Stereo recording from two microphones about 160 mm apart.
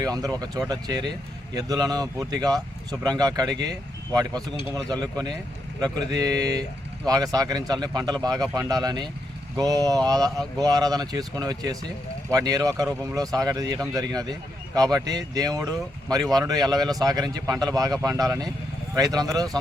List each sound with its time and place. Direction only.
0.0 s speech: 25° right (ahead or behind)